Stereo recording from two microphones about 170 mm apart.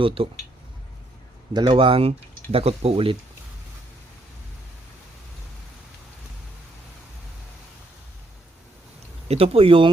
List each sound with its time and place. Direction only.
0.0 s speech: 30° right (ahead or behind)
1.5 s speech: 30° right (ahead or behind)
9.3 s speech: 35° right (ahead or behind)